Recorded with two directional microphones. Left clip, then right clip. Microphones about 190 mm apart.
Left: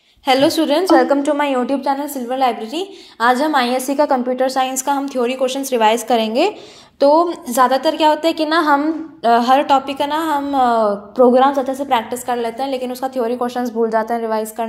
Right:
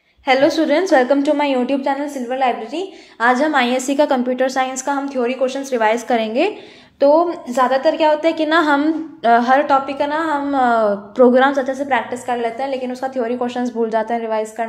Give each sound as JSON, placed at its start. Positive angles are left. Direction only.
{"t": 0.3, "sound": "a woman's voice", "side_deg": 30}
{"t": 2.2, "sound": "a woman's voice", "side_deg": 35}
{"t": 3.7, "sound": "a woman's voice", "side_deg": 0}
{"t": 4.5, "sound": "a woman's voice", "side_deg": 20}
{"t": 7.0, "sound": "a woman's voice", "side_deg": 25}
{"t": 8.5, "sound": "a woman's voice", "side_deg": 5}
{"t": 9.3, "sound": "a woman's voice", "side_deg": 25}
{"t": 11.9, "sound": "a woman's voice", "side_deg": 30}